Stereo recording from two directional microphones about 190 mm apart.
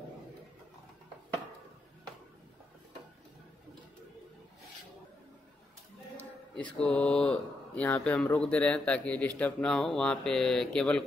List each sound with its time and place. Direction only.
6.5 s speech: 5° left (ahead or behind)